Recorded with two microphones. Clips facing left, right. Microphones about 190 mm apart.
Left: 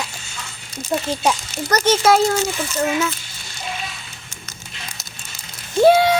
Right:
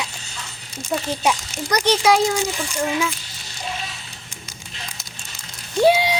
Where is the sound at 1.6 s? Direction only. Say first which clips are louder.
Left 2 dB; 15° right (ahead or behind).